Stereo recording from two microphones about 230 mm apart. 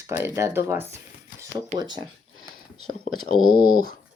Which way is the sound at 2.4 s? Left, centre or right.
Right.